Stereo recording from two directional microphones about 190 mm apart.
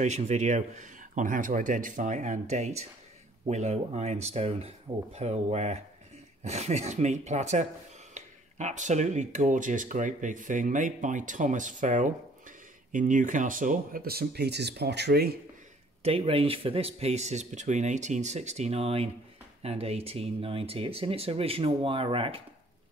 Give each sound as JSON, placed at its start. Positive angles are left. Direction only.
{"t": 0.0, "sound": "speech", "side_deg": -35}
{"t": 16.0, "sound": "speech", "side_deg": -30}